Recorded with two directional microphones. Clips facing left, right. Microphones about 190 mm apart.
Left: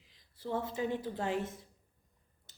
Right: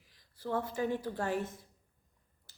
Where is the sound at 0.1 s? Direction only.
20° left (ahead or behind).